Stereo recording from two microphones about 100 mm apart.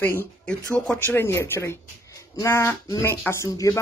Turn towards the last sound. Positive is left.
turn(degrees=35)  # may be behind; listen again after turning